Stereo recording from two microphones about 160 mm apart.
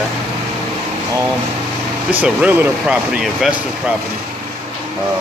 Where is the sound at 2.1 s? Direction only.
10° right (ahead or behind).